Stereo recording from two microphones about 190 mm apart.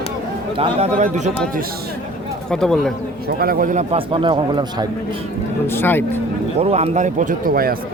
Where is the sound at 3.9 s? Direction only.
25° right (ahead or behind).